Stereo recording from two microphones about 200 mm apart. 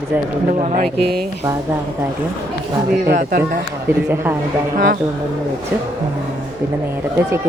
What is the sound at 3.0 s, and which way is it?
Speech, 45° right (ahead or behind).